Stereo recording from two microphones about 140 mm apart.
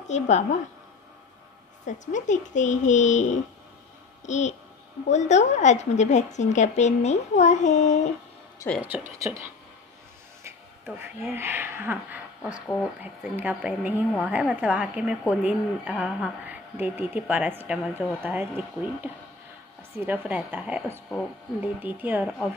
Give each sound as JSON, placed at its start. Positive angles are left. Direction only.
{"t": 0.1, "sound": "a woman's voice", "side_deg": 55}
{"t": 1.9, "sound": "a woman's voice", "side_deg": 60}
{"t": 8.6, "sound": "speech", "side_deg": 20}
{"t": 8.9, "sound": "speech", "side_deg": -20}
{"t": 11.1, "sound": "speech", "side_deg": -15}
{"t": 20.0, "sound": "speech", "side_deg": -10}